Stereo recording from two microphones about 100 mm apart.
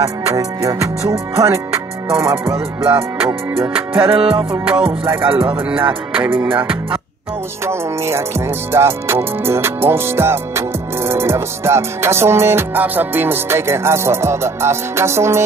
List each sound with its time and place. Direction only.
0.3 s music: 35° right (ahead or behind)
4.1 s music: 70° right (ahead or behind)
4.6 s music: 20° right (ahead or behind)
5.3 s music: 60° right (ahead or behind)
5.6 s music: 20° right (ahead or behind)
7.6 s music: 25° right (ahead or behind)